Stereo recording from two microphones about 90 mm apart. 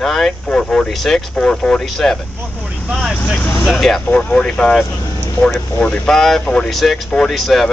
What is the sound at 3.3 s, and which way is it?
Speech, 20° left (ahead or behind).